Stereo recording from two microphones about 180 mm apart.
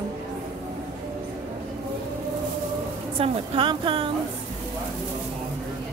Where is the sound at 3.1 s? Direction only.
30° right (ahead or behind).